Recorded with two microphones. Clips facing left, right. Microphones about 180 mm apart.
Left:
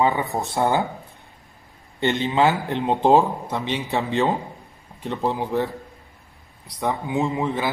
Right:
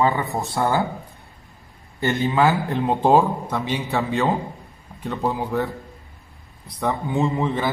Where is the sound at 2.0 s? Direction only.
20° left (ahead or behind).